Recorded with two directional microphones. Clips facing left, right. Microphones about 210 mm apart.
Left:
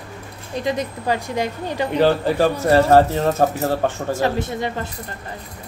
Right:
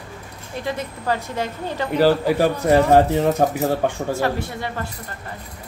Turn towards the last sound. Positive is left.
turn(degrees=20)  # may be behind; listen again after turning